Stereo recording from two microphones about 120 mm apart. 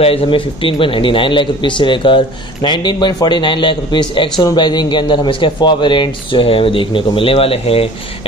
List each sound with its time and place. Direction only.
0.0 s a man's voice: 50° left (ahead or behind)